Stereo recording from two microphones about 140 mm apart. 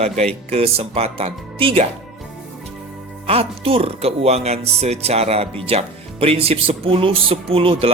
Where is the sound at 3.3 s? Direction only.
45° right (ahead or behind).